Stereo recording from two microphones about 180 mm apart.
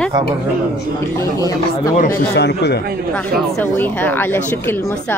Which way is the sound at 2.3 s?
65° left (ahead or behind).